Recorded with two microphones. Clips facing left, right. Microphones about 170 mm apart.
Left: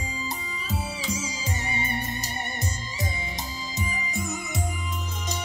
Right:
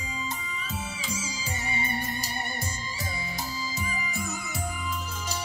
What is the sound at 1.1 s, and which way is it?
Music, 10° right (ahead or behind).